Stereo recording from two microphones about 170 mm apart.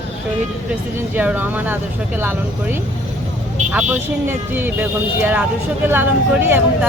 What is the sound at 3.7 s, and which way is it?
Speech, 10° right (ahead or behind).